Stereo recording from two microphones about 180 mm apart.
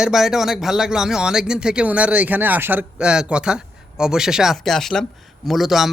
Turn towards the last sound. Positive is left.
turn(degrees=0)  # may be behind; listen again after turning